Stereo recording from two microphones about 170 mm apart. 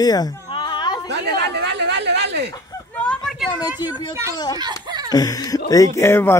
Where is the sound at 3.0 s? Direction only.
5° left (ahead or behind).